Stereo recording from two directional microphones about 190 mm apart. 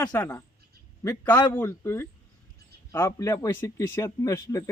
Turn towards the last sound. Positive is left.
turn(degrees=15)  # may be behind; listen again after turning